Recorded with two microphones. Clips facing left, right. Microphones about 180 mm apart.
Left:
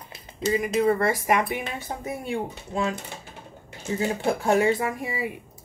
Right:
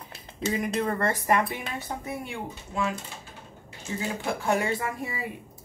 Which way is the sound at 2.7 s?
35° left (ahead or behind).